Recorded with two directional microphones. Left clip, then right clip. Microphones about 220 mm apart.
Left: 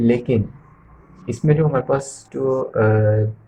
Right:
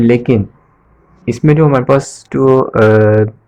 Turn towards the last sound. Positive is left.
turn(degrees=-45)  # may be behind; listen again after turning